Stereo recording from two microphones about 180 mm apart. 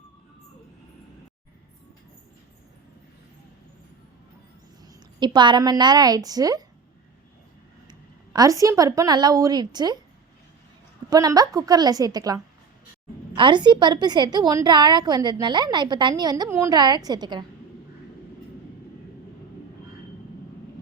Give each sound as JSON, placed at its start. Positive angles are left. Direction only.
{"t": 5.2, "sound": "a woman's voice", "side_deg": -25}
{"t": 7.9, "sound": "a woman's voice", "side_deg": -20}
{"t": 11.1, "sound": "a woman's voice", "side_deg": -20}